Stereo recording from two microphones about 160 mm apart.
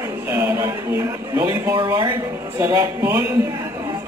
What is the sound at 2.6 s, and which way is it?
Speech, 15° right (ahead or behind).